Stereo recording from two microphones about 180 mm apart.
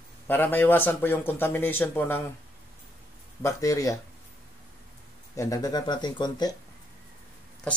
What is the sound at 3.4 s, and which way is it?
Speech, 20° left (ahead or behind).